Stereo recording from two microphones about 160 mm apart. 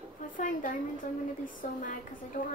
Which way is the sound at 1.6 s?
50° left (ahead or behind).